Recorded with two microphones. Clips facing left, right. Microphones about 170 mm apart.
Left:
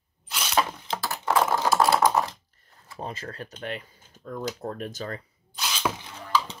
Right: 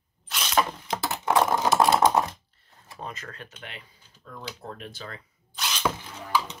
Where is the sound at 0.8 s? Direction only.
20° right (ahead or behind).